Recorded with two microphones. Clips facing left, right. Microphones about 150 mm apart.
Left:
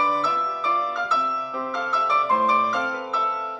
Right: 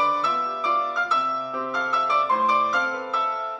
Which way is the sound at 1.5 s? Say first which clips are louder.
Even; centre (ahead or behind).